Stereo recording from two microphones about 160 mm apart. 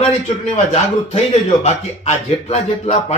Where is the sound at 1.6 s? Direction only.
45° left (ahead or behind).